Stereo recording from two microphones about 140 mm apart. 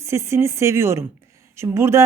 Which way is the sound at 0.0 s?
20° right (ahead or behind).